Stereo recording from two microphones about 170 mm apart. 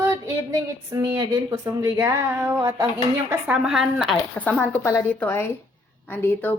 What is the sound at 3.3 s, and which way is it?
Speech, 5° right (ahead or behind).